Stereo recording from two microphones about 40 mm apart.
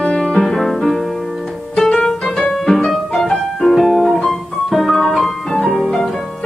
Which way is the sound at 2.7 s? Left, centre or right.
Centre.